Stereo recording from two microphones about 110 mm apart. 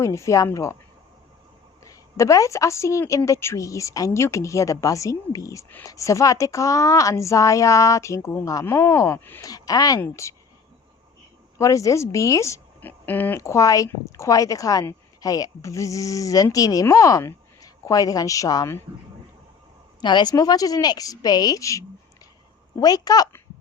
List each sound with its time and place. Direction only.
0.0 s a woman's voice: 30° left (ahead or behind)
1.8 s a woman's voice: 30° left (ahead or behind)
9.4 s a woman's voice: 35° left (ahead or behind)
11.5 s a woman's voice: 30° left (ahead or behind)
12.8 s speech: 15° left (ahead or behind); by 18.7 s 35° left (ahead or behind)
20.0 s speech: 40° left (ahead or behind)